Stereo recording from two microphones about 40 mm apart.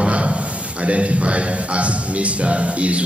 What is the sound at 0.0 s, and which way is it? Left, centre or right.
A man's voice, right.